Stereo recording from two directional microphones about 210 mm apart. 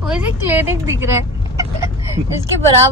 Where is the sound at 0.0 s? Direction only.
5° right (ahead or behind).